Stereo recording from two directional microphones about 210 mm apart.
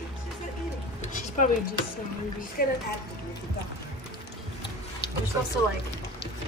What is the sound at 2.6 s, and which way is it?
Speech, 40° left (ahead or behind).